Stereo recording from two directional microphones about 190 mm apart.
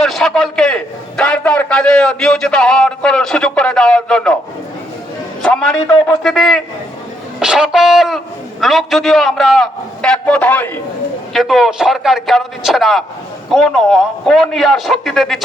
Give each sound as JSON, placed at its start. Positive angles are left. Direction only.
{"t": 0.0, "sound": "a man's voice", "side_deg": 0}
{"t": 5.4, "sound": "a man's voice", "side_deg": 5}